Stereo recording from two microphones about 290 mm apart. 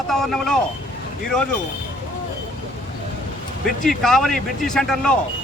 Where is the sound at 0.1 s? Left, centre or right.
Centre.